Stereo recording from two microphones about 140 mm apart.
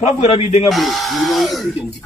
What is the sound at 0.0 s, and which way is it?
Speech, 50° left (ahead or behind).